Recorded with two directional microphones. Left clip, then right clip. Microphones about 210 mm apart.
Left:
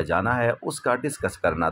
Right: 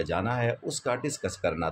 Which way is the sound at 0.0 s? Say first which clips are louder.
Left 6 dB; 20° left (ahead or behind).